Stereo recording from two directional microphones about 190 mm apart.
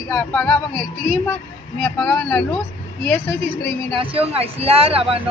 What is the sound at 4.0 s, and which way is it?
Speech, 30° right (ahead or behind).